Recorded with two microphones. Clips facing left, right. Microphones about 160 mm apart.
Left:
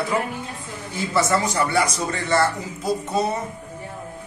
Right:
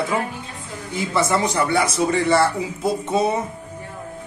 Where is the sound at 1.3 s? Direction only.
25° right (ahead or behind).